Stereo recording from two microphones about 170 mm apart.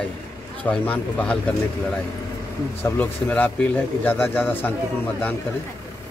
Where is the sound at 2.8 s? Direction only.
10° left (ahead or behind).